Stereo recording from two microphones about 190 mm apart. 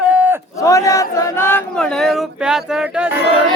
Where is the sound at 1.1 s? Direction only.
15° left (ahead or behind); by 3.1 s 5° right (ahead or behind).